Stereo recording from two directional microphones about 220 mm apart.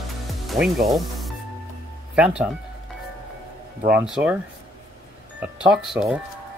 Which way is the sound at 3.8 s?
5° right (ahead or behind).